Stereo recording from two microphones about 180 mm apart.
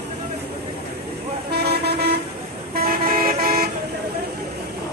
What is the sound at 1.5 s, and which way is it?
Vehicle, 65° right (ahead or behind).